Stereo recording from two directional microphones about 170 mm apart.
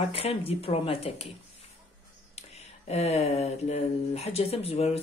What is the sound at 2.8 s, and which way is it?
Speech, 40° left (ahead or behind).